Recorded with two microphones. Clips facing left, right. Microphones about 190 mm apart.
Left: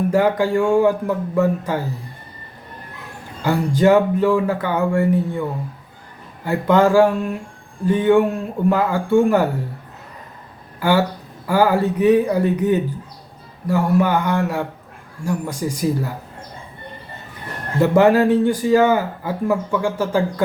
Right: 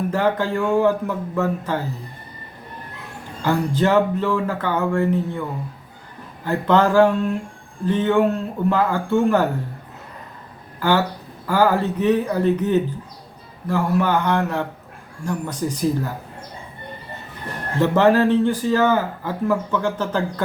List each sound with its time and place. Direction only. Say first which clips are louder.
0.1 s speech: left 4 dB; 10° left (ahead or behind)
3.4 s speech: left 3 dB; 10° left (ahead or behind)
6.4 s speech: left 2 dB; 10° left (ahead or behind)
10.8 s speech: left 2 dB; 10° left (ahead or behind)
17.7 s speech: left 2 dB; 10° left (ahead or behind)